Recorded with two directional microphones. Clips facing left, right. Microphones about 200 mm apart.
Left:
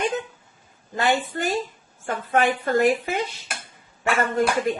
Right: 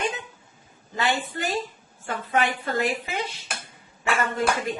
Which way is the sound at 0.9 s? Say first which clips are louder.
Left 4 dB; 50° left (ahead or behind).